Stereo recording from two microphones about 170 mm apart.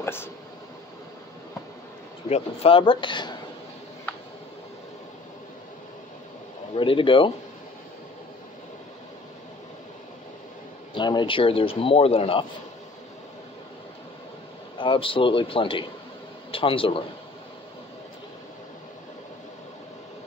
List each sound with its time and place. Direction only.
0.0 s a sound: 15° left (ahead or behind)
2.2 s speech: 35° left (ahead or behind)
6.7 s speech: 30° left (ahead or behind)
11.0 s a man's voice: 25° left (ahead or behind)
14.8 s a man's voice: 30° left (ahead or behind)